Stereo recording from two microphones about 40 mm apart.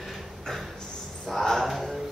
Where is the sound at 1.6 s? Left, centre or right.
Centre.